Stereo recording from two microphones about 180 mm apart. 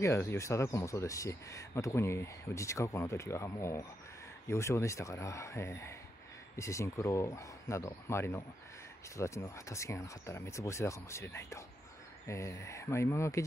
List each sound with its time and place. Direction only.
0.0 s speech: 15° left (ahead or behind)